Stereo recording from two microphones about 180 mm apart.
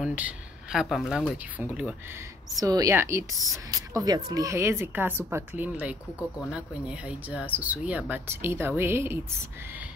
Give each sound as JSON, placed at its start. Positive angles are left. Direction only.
{"t": 0.0, "sound": "a woman's voice", "side_deg": -10}